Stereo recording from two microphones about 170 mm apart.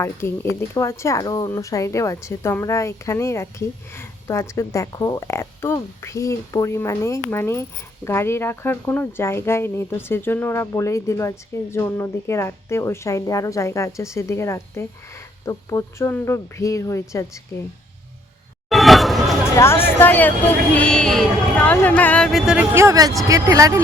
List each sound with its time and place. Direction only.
0.0 s speech: 15° left (ahead or behind)
18.7 s a sound: centre (ahead or behind)
19.5 s speech: 15° left (ahead or behind); by 22.6 s centre (ahead or behind)
22.7 s speech: 15° right (ahead or behind)